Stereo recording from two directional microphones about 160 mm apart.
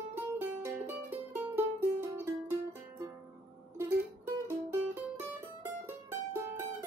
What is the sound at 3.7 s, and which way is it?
Music, 15° right (ahead or behind).